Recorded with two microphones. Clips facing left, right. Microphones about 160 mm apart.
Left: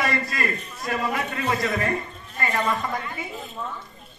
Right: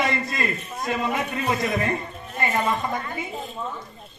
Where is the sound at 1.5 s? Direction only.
25° right (ahead or behind).